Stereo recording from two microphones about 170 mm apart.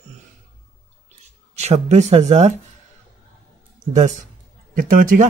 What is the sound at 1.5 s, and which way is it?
Speech, 40° right (ahead or behind).